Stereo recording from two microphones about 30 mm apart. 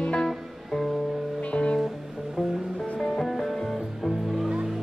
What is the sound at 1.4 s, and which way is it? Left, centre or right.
Music, left.